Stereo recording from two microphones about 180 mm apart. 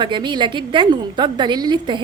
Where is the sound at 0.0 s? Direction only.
25° right (ahead or behind).